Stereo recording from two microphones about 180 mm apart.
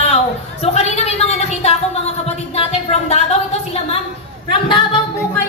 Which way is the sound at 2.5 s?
35° left (ahead or behind).